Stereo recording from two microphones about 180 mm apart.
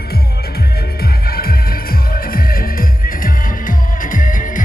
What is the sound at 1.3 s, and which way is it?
Music, 55° left (ahead or behind).